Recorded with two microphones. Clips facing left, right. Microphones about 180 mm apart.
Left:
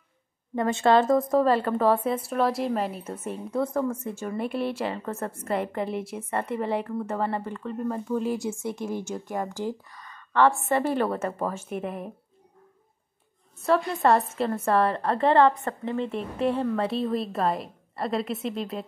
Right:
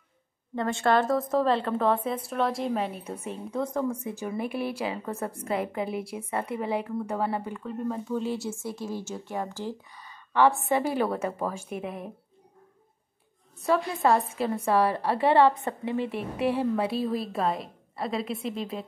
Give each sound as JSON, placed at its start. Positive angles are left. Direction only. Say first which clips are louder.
{"t": 0.7, "sound": "a woman's voice", "louder": "left 3 dB", "side_deg": 20}
{"t": 1.3, "sound": "a woman's voice", "louder": "left 3 dB", "side_deg": 5}
{"t": 4.2, "sound": "a woman's voice", "louder": "left 3 dB", "side_deg": -5}
{"t": 8.4, "sound": "speech", "louder": "left 3 dB", "side_deg": 15}
{"t": 9.8, "sound": "a woman's voice", "louder": "left 1 dB", "side_deg": -5}
{"t": 13.7, "sound": "a woman's voice", "louder": "left 2 dB", "side_deg": 0}